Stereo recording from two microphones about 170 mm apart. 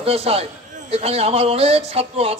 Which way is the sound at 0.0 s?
35° right (ahead or behind).